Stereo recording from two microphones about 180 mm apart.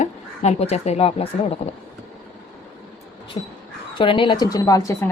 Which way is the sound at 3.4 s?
35° left (ahead or behind).